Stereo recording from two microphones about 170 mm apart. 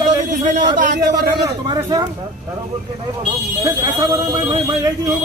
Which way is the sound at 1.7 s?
25° right (ahead or behind).